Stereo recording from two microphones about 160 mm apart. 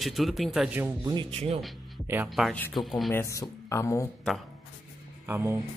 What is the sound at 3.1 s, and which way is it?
Speech, 20° left (ahead or behind).